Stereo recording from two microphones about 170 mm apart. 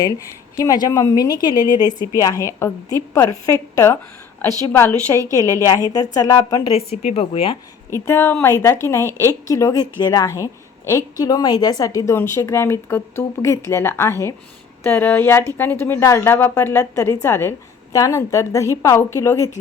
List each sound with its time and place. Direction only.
0.0 s a woman's voice: 20° left (ahead or behind)
5.2 s a woman's voice: 20° right (ahead or behind)
5.6 s a woman's voice: 20° left (ahead or behind)
6.7 s speech: 40° left (ahead or behind)
7.9 s a woman's voice: 15° left (ahead or behind)